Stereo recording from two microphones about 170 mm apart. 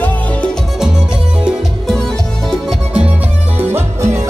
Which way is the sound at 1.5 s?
Centre (ahead or behind).